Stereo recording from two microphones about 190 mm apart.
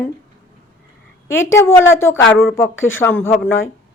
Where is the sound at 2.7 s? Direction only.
90° left.